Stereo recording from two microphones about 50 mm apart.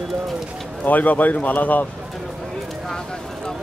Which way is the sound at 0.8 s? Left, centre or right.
Left.